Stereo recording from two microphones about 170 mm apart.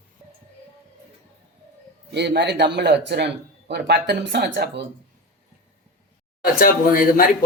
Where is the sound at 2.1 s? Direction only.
85° right.